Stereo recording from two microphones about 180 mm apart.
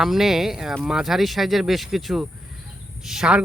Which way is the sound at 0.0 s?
Centre (ahead or behind).